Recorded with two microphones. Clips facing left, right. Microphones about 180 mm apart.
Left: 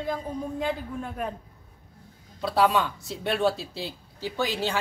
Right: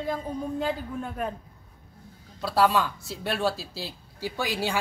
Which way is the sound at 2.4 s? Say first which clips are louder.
Even; centre (ahead or behind).